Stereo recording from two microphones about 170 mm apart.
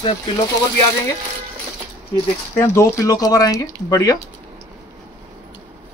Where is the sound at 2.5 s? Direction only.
15° left (ahead or behind).